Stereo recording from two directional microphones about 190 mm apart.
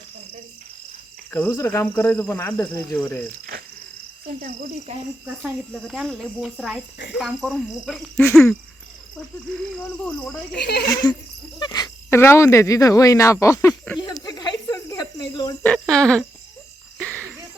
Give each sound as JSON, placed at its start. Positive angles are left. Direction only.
{"t": 1.3, "sound": "speech", "side_deg": 10}
{"t": 3.5, "sound": "cricket", "side_deg": -50}
{"t": 4.4, "sound": "speech", "side_deg": -55}
{"t": 5.4, "sound": "speech", "side_deg": 0}
{"t": 10.1, "sound": "speech", "side_deg": 5}
{"t": 10.6, "sound": "speech", "side_deg": 60}
{"t": 11.0, "sound": "a sound", "side_deg": 20}
{"t": 11.6, "sound": "speech", "side_deg": 20}
{"t": 14.3, "sound": "snake", "side_deg": 20}
{"t": 15.6, "sound": "speech", "side_deg": 5}
{"t": 17.0, "sound": "a sound", "side_deg": -10}